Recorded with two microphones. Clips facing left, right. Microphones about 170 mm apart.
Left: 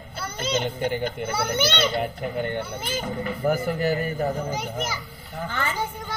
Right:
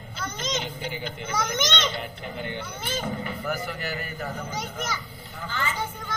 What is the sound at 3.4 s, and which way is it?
Speech, 45° left (ahead or behind).